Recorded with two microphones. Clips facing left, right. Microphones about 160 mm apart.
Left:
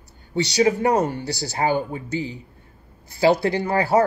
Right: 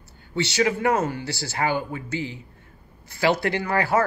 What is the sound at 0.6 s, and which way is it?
A woman's voice, 30° left (ahead or behind).